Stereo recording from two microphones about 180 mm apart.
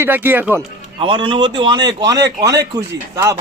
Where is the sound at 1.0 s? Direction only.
30° right (ahead or behind).